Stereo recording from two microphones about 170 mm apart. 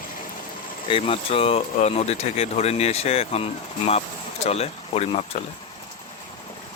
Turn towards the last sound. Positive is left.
turn(degrees=35)  # may be behind; listen again after turning